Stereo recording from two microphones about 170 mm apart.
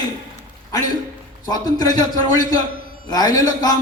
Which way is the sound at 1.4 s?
20° left (ahead or behind).